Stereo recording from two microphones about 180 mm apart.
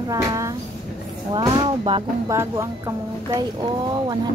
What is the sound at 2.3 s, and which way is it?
Speech, 15° right (ahead or behind).